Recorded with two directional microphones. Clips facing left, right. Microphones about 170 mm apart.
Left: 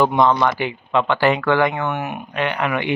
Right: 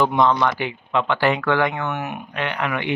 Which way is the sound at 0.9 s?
35° left (ahead or behind).